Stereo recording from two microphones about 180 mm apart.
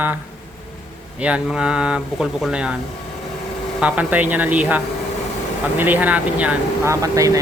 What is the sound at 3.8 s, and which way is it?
Speech, 5° right (ahead or behind).